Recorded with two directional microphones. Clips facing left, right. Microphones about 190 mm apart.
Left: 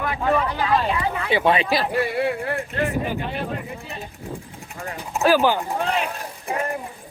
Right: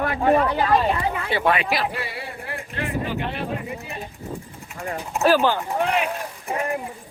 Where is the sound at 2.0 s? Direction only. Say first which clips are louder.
Left 11 dB; 55° left (ahead or behind).